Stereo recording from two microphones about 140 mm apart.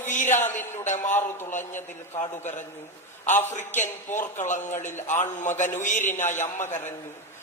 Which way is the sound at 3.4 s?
60° left (ahead or behind).